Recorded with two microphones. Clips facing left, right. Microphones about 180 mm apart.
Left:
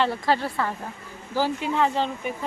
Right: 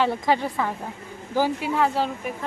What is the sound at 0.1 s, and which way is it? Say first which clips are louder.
A woman's voice: right 1 dB; 15° right (ahead or behind).